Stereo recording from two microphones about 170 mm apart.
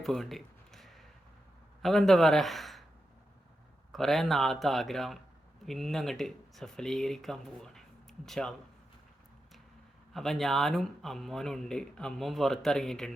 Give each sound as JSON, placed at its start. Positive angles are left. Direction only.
{"t": 0.0, "sound": "a sound", "side_deg": 0}
{"t": 1.8, "sound": "a man's voice", "side_deg": 0}
{"t": 3.9, "sound": "speech", "side_deg": 0}
{"t": 10.1, "sound": "speech", "side_deg": 0}